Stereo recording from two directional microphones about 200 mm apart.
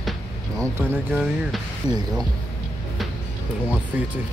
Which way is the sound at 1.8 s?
15° left (ahead or behind).